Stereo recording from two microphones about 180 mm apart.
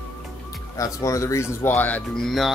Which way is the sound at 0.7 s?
20° left (ahead or behind).